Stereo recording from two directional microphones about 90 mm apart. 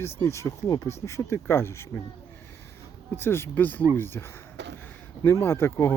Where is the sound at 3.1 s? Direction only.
25° left (ahead or behind).